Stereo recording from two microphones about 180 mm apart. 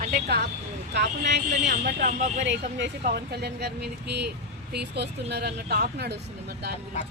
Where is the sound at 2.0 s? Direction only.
45° right (ahead or behind).